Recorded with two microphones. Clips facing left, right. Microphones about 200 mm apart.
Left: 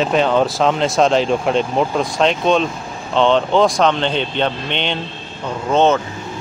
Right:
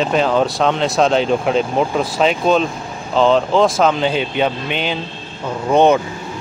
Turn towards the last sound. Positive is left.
turn(degrees=-15)  # may be behind; listen again after turning